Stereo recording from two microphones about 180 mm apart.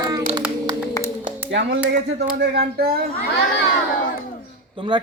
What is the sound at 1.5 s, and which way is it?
Speech, 85° right.